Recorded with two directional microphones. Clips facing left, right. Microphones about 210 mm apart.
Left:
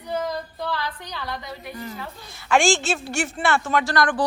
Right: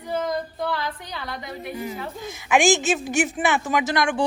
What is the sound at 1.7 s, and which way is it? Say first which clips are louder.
Speech: right 4 dB; 10° right (ahead or behind).